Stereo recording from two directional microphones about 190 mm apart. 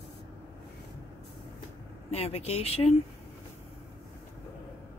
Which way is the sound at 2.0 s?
35° left (ahead or behind).